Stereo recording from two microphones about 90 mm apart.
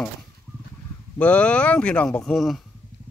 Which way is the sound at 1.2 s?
15° left (ahead or behind).